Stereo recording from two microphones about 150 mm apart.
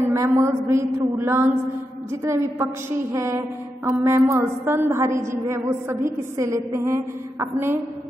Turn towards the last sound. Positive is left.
turn(degrees=-15)  # may be behind; listen again after turning